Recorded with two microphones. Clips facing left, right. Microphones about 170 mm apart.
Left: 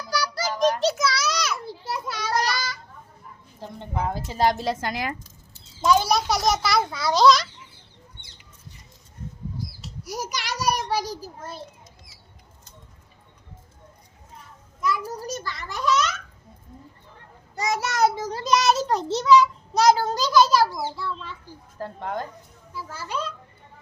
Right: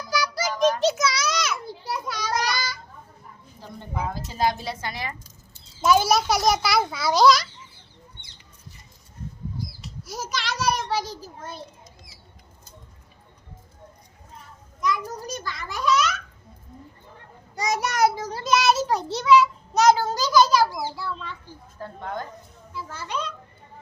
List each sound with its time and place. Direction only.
0.1 s music: centre (ahead or behind)
0.6 s children playing: centre (ahead or behind)
3.8 s a sound: 25° left (ahead or behind)
4.4 s a woman's voice: 45° left (ahead or behind)
5.8 s a child's voice: 5° right (ahead or behind)
10.1 s a sound: 15° left (ahead or behind)
14.8 s a sound: 5° left (ahead or behind)
17.5 s child singing: 15° right (ahead or behind)
19.9 s a sound: centre (ahead or behind)
20.7 s a child's voice: 10° right (ahead or behind)
21.8 s speech: 35° left (ahead or behind)
22.7 s a child's voice: 10° left (ahead or behind)